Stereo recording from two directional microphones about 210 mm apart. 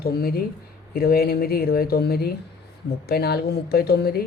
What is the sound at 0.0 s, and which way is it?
Speech, 45° left (ahead or behind).